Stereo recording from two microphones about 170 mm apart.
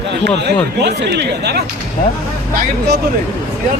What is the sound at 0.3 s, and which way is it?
Speech, 80° right.